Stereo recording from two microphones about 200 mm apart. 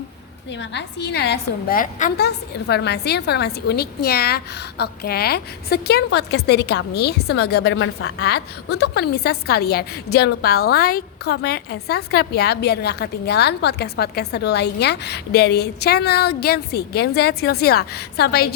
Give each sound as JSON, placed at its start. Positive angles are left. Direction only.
{"t": 0.5, "sound": "a woman's voice", "side_deg": 60}